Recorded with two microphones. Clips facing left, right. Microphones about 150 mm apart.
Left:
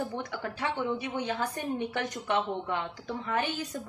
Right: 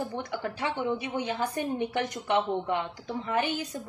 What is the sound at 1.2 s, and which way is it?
A woman's voice, 15° right (ahead or behind).